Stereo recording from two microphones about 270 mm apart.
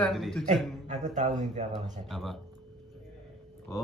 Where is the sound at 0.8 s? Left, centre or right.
Right.